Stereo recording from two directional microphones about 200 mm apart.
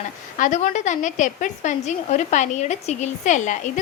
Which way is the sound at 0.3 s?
40° left (ahead or behind).